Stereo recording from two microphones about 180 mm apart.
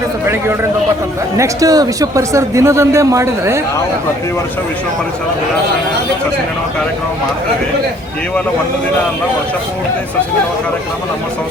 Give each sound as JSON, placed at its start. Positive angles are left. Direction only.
{"t": 1.4, "sound": "speech", "side_deg": -20}